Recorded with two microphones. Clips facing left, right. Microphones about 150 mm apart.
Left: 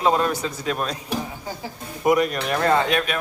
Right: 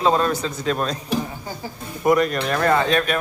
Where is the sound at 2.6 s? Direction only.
25° left (ahead or behind).